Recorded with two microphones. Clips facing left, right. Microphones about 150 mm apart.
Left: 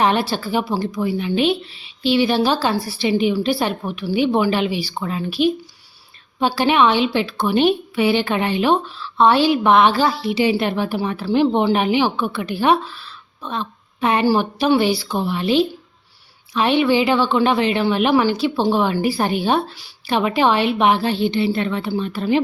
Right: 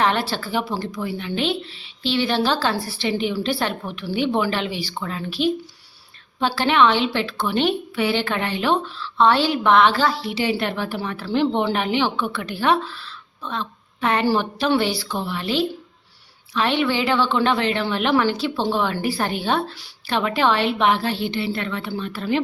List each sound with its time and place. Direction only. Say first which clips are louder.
0.0 s a woman's voice: left 3 dB; 15° left (ahead or behind)